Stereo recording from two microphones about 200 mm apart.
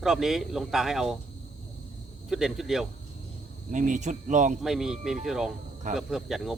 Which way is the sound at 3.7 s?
40° right (ahead or behind).